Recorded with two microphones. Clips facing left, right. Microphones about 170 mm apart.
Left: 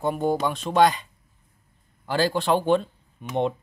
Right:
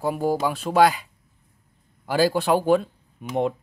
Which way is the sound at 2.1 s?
10° right (ahead or behind).